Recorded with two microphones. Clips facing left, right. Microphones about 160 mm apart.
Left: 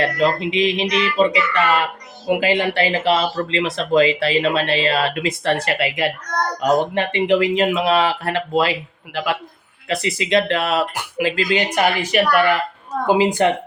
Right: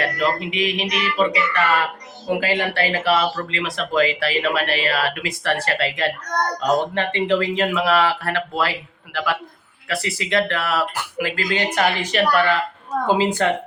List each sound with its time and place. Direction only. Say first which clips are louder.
0.0 s speech: left 4 dB; 25° left (ahead or behind)